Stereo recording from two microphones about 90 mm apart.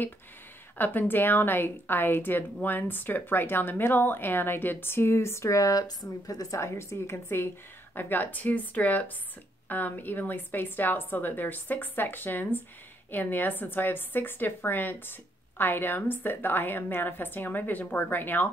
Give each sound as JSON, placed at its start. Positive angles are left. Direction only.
{"t": 0.7, "sound": "a woman's voice", "side_deg": 20}